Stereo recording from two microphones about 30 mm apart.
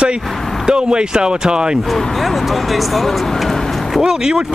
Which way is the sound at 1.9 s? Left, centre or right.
Centre.